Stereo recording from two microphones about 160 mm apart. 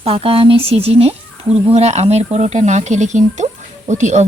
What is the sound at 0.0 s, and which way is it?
Speech, 35° right (ahead or behind).